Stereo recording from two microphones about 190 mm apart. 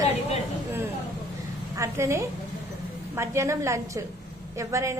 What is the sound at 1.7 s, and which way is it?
A woman's voice, 15° right (ahead or behind).